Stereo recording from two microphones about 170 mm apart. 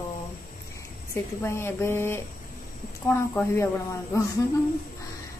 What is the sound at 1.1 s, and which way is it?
A woman's voice, 15° left (ahead or behind).